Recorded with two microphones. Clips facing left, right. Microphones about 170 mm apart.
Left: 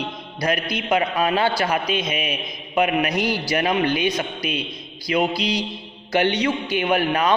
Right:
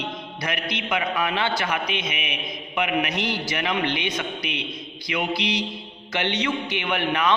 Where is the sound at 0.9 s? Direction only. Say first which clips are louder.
Left 5 dB; 35° left (ahead or behind).